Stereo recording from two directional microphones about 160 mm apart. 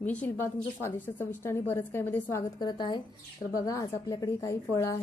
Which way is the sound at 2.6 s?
30° left (ahead or behind).